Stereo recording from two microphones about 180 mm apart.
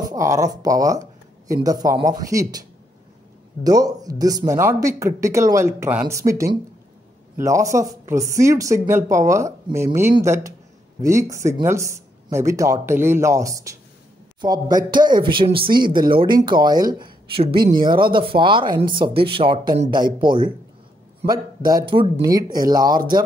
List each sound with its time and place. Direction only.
0.0 s speech: 20° right (ahead or behind)
3.6 s speech: 20° right (ahead or behind)